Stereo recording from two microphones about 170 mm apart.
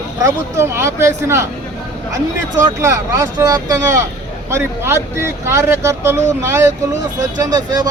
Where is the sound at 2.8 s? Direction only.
20° right (ahead or behind).